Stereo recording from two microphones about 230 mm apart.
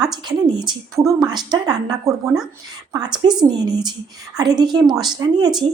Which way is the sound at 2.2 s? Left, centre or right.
Centre.